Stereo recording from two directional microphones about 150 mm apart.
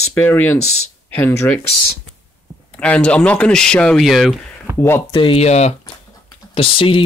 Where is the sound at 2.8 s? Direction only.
5° left (ahead or behind).